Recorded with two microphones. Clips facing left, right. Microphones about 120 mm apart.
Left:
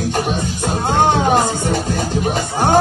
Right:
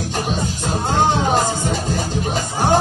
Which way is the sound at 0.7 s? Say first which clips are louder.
Left 3 dB; 50° left (ahead or behind).